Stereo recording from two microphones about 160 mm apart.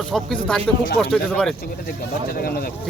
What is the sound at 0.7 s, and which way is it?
Speech, centre (ahead or behind).